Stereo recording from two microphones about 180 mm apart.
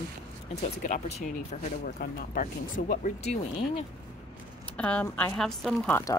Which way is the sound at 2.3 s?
50° left (ahead or behind).